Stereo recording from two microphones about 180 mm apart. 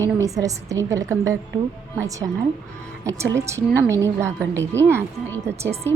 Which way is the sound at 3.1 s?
15° right (ahead or behind).